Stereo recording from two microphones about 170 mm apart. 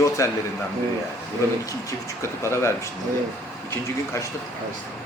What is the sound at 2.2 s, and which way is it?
Speech, 15° left (ahead or behind).